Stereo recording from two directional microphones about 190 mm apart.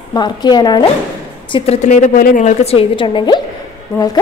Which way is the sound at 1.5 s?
35° left (ahead or behind).